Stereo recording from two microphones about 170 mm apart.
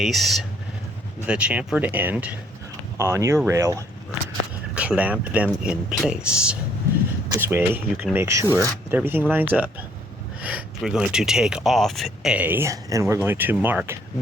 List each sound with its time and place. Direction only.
0.0 s speech: centre (ahead or behind)